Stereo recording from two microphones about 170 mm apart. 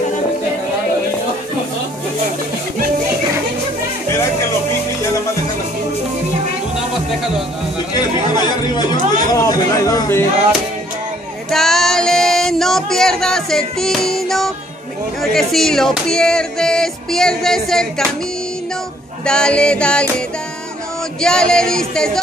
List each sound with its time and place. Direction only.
7.9 s chatter: 25° left (ahead or behind)
11.5 s music: centre (ahead or behind)
19.2 s music: 5° left (ahead or behind)
21.2 s music: 5° left (ahead or behind)